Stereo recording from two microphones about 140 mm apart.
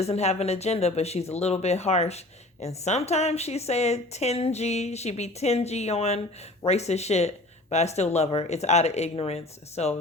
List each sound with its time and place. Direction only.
0.0 s speech: 50° left (ahead or behind)